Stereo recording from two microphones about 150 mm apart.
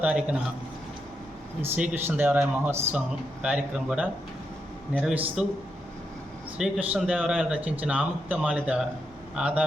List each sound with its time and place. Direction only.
0.0 s speech: 10° right (ahead or behind)
1.6 s speech: 10° right (ahead or behind)
5.1 s speech: 10° right (ahead or behind)
6.6 s speech: 5° right (ahead or behind)